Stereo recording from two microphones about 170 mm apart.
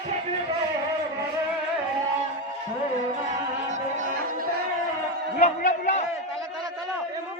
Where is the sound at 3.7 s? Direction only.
45° right (ahead or behind).